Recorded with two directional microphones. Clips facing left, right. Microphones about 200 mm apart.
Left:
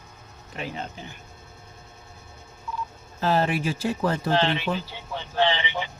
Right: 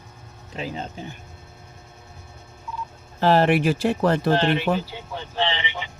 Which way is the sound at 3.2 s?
65° right (ahead or behind).